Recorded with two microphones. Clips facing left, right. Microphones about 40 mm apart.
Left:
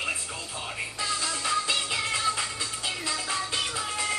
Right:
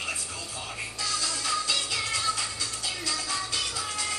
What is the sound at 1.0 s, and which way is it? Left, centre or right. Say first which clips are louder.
Music: left 1 dB; left.